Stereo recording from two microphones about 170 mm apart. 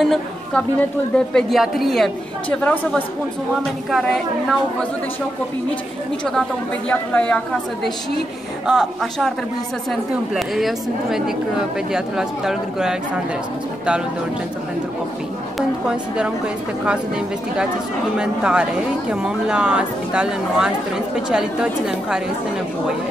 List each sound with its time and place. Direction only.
0.0 s a woman's voice: centre (ahead or behind)
6.9 s speech: 5° left (ahead or behind)
18.1 s speech: 5° right (ahead or behind)